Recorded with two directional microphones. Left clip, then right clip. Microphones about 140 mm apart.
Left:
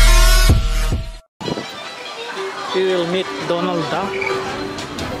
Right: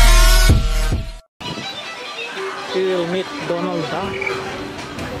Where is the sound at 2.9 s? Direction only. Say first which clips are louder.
Left 2 dB; 5° left (ahead or behind).